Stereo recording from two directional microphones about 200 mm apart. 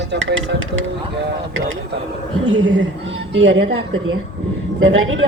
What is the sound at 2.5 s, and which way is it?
A woman's voice, 70° right (ahead or behind).